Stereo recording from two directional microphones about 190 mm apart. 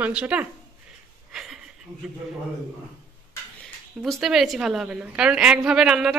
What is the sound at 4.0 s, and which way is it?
A woman's voice, centre (ahead or behind).